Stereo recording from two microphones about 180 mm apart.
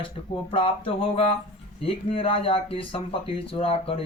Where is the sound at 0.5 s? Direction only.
30° left (ahead or behind).